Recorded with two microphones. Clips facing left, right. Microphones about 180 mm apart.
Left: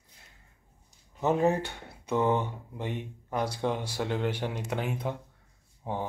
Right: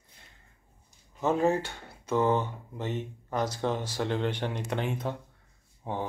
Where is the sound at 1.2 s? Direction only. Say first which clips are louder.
Even; 20° left (ahead or behind).